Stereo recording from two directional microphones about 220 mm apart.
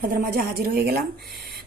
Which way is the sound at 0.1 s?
40° right (ahead or behind).